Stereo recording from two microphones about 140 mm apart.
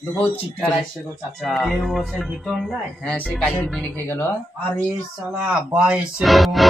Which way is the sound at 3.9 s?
15° left (ahead or behind).